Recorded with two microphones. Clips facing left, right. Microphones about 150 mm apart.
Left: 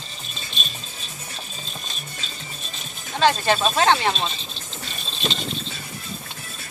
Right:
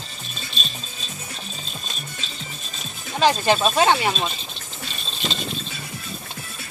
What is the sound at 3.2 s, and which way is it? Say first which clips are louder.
Speech: right 1 dB; 15° right (ahead or behind).